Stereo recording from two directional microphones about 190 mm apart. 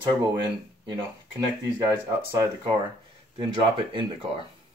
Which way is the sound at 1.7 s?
15° right (ahead or behind).